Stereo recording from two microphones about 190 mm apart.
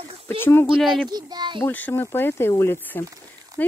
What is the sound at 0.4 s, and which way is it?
Speech, 10° left (ahead or behind).